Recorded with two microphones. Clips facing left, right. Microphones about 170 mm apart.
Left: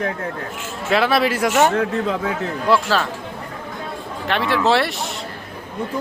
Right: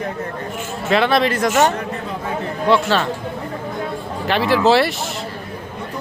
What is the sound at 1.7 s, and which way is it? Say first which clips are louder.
Speech: left 6 dB; 90° left.